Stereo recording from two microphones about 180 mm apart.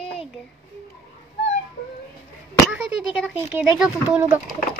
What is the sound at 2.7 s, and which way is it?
Speech, 5° right (ahead or behind).